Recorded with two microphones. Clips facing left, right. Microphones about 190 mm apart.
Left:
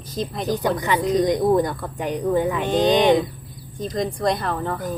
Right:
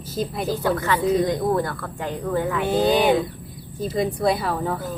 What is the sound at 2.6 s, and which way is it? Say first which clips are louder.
Speech: even; 10° right (ahead or behind).